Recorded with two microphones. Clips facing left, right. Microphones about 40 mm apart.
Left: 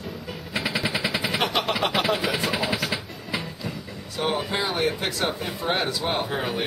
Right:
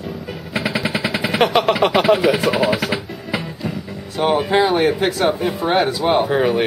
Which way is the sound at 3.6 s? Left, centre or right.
Centre.